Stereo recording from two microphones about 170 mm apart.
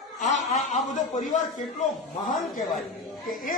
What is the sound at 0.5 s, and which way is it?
Speech, 45° left (ahead or behind).